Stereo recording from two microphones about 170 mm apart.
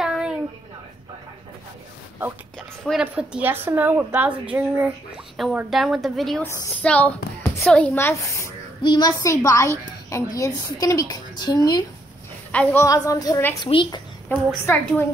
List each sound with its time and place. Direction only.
0.0 s a sound: 5° right (ahead or behind)
2.8 s a woman's voice: centre (ahead or behind)
6.4 s a woman's voice: 10° left (ahead or behind)
13.7 s a woman's voice: 30° left (ahead or behind)
14.3 s a woman's voice: 10° left (ahead or behind)